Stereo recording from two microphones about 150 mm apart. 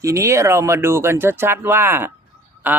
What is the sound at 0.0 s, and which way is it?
Speech, 20° right (ahead or behind).